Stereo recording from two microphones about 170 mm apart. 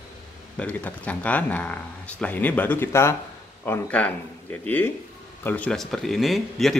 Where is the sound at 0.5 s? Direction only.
10° left (ahead or behind).